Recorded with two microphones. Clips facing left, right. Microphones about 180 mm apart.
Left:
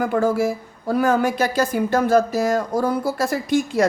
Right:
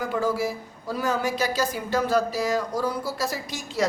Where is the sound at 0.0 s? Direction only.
55° left (ahead or behind).